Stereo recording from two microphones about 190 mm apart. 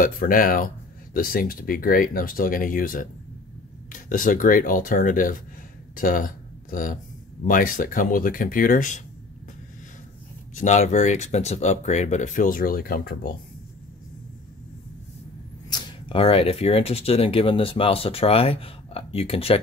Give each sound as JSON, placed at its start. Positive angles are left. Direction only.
{"t": 0.0, "sound": "speech", "side_deg": 45}
{"t": 10.5, "sound": "speech", "side_deg": 40}
{"t": 15.7, "sound": "speech", "side_deg": 25}